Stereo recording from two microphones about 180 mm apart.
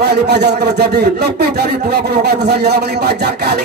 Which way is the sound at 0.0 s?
65° right (ahead or behind).